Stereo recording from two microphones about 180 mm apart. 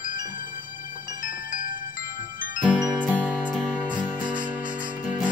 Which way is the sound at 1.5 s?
45° left (ahead or behind).